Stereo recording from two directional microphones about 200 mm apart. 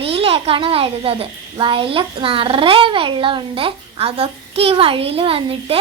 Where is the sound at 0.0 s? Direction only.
30° right (ahead or behind).